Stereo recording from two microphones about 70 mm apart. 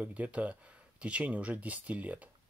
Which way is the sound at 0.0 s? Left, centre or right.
Centre.